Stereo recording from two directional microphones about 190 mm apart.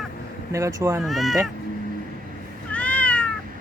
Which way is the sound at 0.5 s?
15° right (ahead or behind).